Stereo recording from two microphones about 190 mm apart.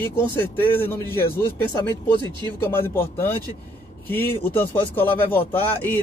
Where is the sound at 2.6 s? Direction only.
10° left (ahead or behind).